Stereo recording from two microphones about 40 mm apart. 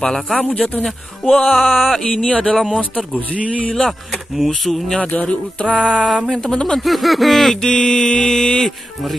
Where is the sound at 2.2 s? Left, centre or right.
Left.